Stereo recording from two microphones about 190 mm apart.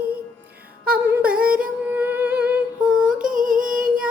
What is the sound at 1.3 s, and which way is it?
Carnatic music, 50° right (ahead or behind).